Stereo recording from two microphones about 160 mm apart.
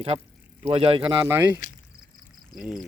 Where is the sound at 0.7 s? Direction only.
35° right (ahead or behind).